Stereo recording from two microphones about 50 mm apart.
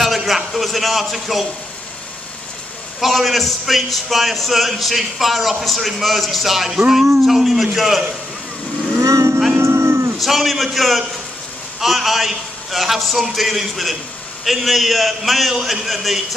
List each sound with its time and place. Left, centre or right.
0.0 s a sound: centre
0.5 s a man's voice: centre
3.0 s a man's voice: centre
9.0 s speech: right
9.6 s cattle: right
10.2 s a man's voice: centre